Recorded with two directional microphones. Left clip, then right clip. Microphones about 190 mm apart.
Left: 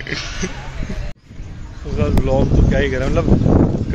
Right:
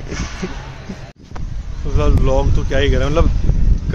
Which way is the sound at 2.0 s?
25° right (ahead or behind).